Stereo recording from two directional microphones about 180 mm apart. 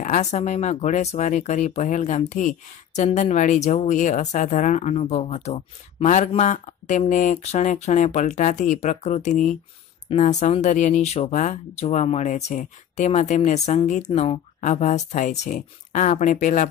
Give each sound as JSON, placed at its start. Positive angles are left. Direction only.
{"t": 0.0, "sound": "speech", "side_deg": 40}